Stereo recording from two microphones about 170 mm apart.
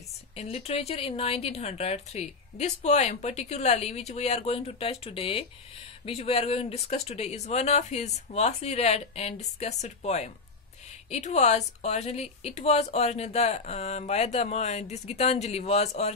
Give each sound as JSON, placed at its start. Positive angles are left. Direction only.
{"t": 0.4, "sound": "speech", "side_deg": 35}